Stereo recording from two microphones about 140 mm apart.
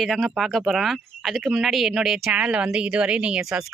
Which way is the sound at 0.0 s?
Centre (ahead or behind).